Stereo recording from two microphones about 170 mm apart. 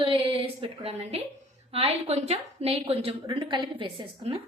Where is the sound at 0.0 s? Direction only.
30° right (ahead or behind).